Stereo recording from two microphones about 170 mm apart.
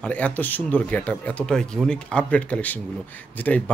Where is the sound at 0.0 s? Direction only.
10° left (ahead or behind).